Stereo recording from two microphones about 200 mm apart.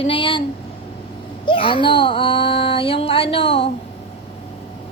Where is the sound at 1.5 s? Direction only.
25° left (ahead or behind).